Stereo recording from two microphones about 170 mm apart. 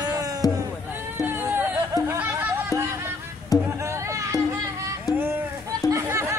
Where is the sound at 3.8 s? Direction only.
15° right (ahead or behind).